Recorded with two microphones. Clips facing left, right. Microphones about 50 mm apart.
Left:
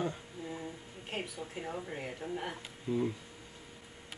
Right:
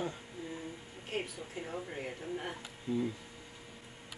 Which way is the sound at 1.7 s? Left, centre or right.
Centre.